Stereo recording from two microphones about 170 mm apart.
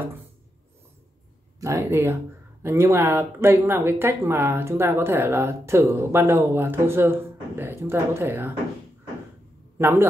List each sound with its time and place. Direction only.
0.0 s a sound: 10° right (ahead or behind)
1.6 s speech: 15° right (ahead or behind)
9.8 s a man's voice: 15° right (ahead or behind)